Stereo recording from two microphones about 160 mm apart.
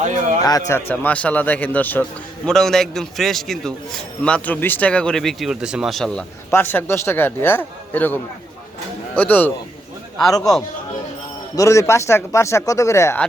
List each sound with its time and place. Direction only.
0.4 s a man's voice: 20° left (ahead or behind)
10.2 s a man's voice: 25° left (ahead or behind)
11.5 s a man's voice: 20° left (ahead or behind)